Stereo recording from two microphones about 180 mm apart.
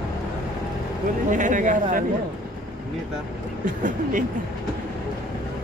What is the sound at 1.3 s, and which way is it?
Speech, 45° right (ahead or behind).